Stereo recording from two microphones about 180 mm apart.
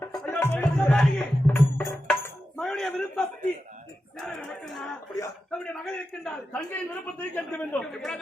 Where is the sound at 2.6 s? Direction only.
Centre (ahead or behind).